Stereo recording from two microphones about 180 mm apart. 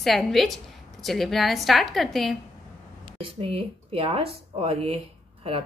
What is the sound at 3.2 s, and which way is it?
Speech, 30° right (ahead or behind).